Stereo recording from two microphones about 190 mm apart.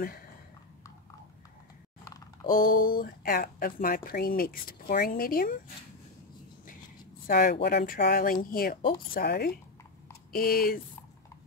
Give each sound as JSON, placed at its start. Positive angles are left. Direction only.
{"t": 2.0, "sound": "a sound", "side_deg": 20}
{"t": 2.5, "sound": "speech", "side_deg": 45}
{"t": 7.2, "sound": "speech", "side_deg": 50}